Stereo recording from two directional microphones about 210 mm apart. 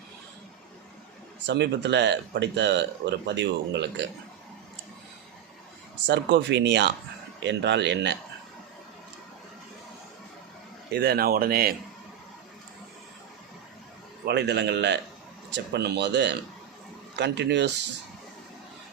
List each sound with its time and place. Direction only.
1.5 s speech: 55° right (ahead or behind)
6.1 s speech: 55° right (ahead or behind)
10.9 s speech: 50° right (ahead or behind)
14.3 s speech: 55° right (ahead or behind)